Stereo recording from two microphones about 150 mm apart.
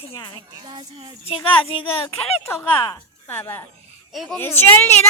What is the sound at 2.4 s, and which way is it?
A woman's voice, 15° left (ahead or behind).